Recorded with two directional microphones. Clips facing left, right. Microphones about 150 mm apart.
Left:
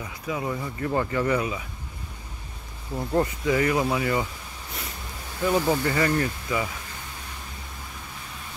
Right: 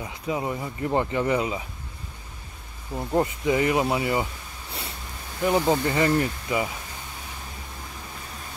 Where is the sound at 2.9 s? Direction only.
15° right (ahead or behind).